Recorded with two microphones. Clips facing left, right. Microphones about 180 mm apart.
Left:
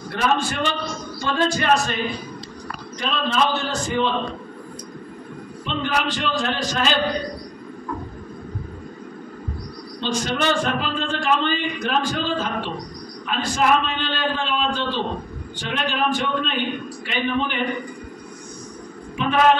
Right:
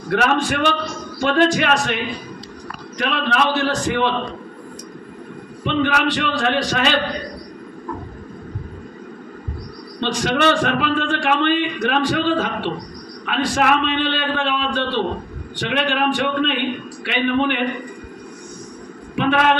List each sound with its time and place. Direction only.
0.1 s a man's voice: 70° right (ahead or behind)
3.0 s a man's voice: 70° right (ahead or behind)
5.6 s a man's voice: 65° right (ahead or behind)
9.9 s a man's voice: 65° right (ahead or behind)
19.1 s a woman's voice: 70° right (ahead or behind)